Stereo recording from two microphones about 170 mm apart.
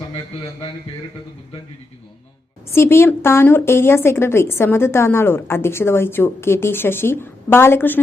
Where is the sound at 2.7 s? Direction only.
15° left (ahead or behind).